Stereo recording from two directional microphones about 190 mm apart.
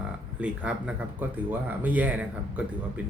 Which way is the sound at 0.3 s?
5° right (ahead or behind).